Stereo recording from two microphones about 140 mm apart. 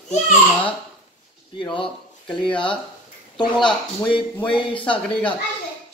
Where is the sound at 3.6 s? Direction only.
35° left (ahead or behind).